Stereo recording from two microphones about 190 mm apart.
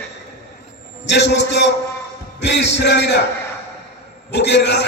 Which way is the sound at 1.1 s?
65° left (ahead or behind).